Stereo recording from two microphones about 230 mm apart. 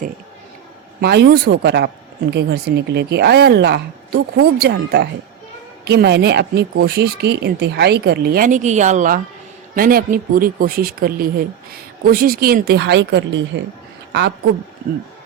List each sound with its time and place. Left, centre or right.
1.0 s a woman's voice: right